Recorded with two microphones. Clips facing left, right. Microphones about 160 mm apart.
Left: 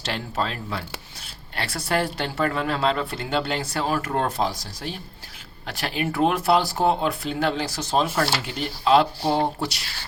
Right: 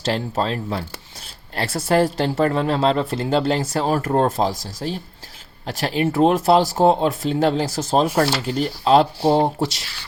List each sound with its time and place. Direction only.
0.0 s speech: 35° right (ahead or behind)
6.7 s speech: 30° right (ahead or behind)
7.9 s speech: 40° right (ahead or behind)